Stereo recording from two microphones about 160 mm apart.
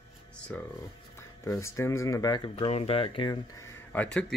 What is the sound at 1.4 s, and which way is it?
Speech, 20° left (ahead or behind).